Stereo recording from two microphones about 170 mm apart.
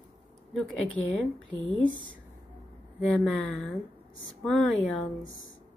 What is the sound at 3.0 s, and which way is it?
A woman's voice, centre (ahead or behind).